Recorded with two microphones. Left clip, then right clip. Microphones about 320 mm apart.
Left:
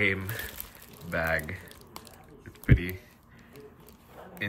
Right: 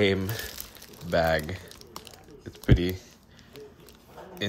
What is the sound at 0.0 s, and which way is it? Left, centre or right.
Speech, centre.